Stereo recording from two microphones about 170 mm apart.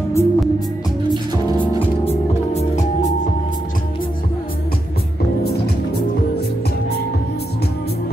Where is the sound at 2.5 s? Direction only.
45° left (ahead or behind).